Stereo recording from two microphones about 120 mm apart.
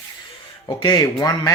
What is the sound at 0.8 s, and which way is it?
Speech, 35° left (ahead or behind).